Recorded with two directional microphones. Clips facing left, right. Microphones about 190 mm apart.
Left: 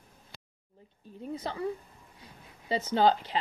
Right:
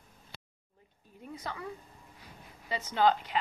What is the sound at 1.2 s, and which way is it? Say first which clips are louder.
Speech: left 6 dB; 30° left (ahead or behind).